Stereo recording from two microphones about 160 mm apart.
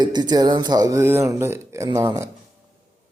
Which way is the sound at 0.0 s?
25° right (ahead or behind).